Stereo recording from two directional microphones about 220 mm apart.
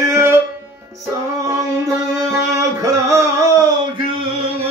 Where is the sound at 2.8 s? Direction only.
15° right (ahead or behind).